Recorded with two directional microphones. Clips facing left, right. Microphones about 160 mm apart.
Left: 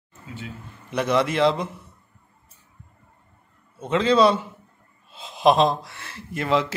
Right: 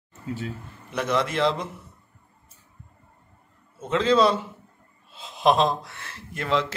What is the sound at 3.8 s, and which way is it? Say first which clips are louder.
Speech: left 2 dB; centre (ahead or behind).